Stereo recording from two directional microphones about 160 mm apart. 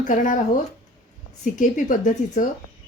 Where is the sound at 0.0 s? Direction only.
55° left (ahead or behind).